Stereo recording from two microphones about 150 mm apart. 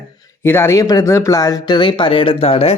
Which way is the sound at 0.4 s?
15° left (ahead or behind).